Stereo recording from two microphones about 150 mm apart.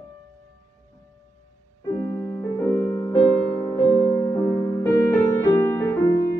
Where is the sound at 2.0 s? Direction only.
20° left (ahead or behind).